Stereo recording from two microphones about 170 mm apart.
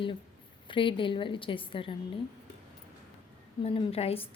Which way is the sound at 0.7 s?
30° left (ahead or behind).